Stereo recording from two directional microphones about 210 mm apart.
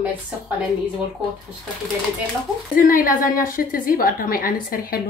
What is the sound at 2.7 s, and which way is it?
A woman's voice, 40° left (ahead or behind).